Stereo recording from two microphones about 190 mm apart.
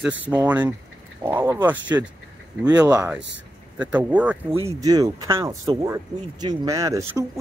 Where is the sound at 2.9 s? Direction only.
5° right (ahead or behind).